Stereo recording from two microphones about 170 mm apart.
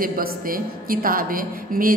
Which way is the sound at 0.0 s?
55° right (ahead or behind).